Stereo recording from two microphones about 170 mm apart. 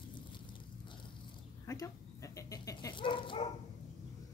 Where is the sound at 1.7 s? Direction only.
20° left (ahead or behind).